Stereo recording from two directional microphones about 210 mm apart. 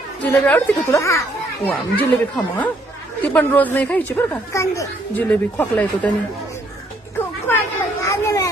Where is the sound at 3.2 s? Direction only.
10° left (ahead or behind).